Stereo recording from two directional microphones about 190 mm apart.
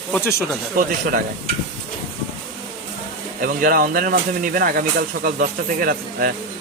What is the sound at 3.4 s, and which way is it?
Speech, 50° right (ahead or behind).